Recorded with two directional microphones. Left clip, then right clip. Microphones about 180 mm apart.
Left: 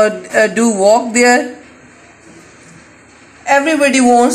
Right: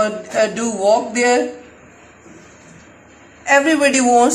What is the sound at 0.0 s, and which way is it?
Speech, 45° left (ahead or behind).